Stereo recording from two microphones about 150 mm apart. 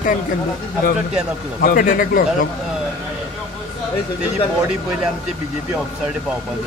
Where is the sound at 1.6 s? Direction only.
65° left (ahead or behind).